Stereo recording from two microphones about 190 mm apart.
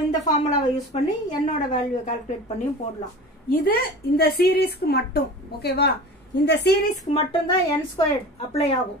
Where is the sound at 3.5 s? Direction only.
50° left (ahead or behind).